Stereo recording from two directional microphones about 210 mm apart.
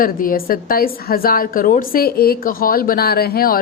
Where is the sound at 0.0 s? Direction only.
40° left (ahead or behind).